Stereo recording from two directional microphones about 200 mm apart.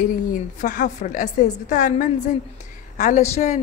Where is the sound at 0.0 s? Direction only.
40° left (ahead or behind).